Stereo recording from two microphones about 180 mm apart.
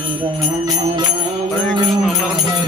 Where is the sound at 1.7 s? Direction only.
Centre (ahead or behind).